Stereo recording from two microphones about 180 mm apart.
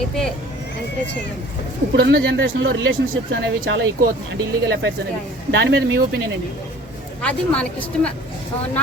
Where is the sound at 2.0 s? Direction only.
60° right (ahead or behind); by 2.9 s 85° right.